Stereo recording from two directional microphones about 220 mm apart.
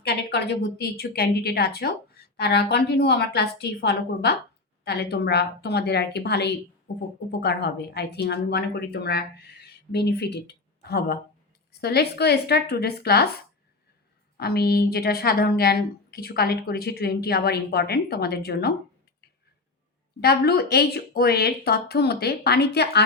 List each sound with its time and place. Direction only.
0.0 s a woman's voice: 45° left (ahead or behind)
14.3 s a woman's voice: 45° left (ahead or behind)
20.2 s a woman's voice: 45° left (ahead or behind)